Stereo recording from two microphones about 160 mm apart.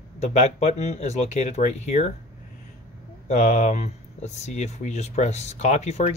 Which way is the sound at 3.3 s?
45° left (ahead or behind).